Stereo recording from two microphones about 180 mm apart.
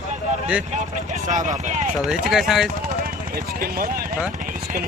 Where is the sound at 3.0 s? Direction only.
55° right (ahead or behind).